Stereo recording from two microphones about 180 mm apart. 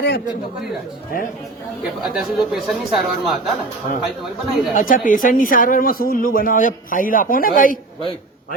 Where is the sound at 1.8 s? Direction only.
5° right (ahead or behind).